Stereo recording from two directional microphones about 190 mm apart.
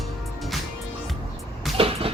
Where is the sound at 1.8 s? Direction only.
30° right (ahead or behind).